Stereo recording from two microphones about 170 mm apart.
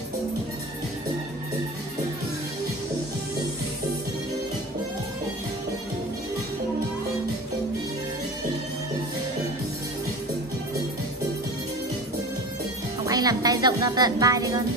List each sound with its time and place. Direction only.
13.0 s speech: 20° right (ahead or behind)